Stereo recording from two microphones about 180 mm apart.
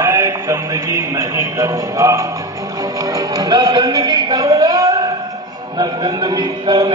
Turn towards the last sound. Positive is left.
turn(degrees=-25)  # may be behind; listen again after turning